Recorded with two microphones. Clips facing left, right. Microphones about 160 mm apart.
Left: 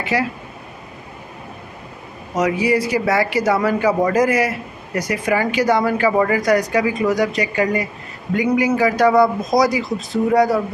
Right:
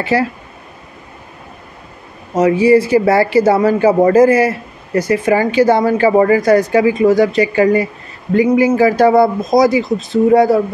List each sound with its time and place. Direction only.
0.1 s speech: 30° right (ahead or behind)
2.3 s speech: 30° right (ahead or behind)